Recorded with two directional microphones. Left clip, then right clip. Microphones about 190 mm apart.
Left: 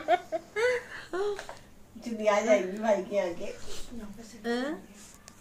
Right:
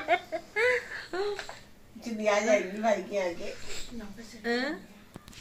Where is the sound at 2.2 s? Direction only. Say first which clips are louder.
Left 1 dB; 5° right (ahead or behind).